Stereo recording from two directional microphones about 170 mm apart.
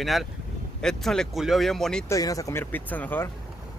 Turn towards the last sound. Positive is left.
turn(degrees=10)  # may be behind; listen again after turning